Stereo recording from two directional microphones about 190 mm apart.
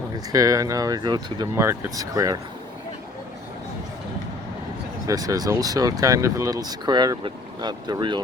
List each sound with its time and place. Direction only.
0.3 s speech: 20° right (ahead or behind)
5.0 s speech: 20° right (ahead or behind)